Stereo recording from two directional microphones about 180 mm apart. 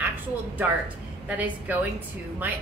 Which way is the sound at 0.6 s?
10° right (ahead or behind).